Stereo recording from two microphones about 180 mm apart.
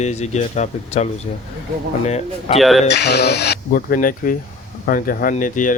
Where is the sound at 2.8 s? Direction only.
70° left (ahead or behind).